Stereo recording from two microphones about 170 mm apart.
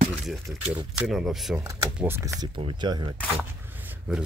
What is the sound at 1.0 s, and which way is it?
Speech, centre (ahead or behind).